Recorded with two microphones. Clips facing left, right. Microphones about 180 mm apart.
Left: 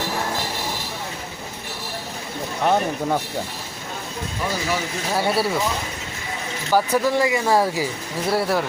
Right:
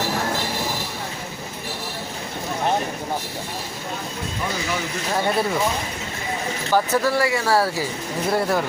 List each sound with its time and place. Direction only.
5.1 s speech: 5° left (ahead or behind)
6.7 s speech: 15° left (ahead or behind)
8.3 s speech: 5° left (ahead or behind)